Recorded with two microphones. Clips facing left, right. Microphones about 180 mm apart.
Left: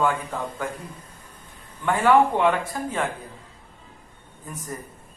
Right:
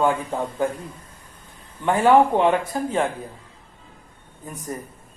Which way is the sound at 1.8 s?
25° right (ahead or behind).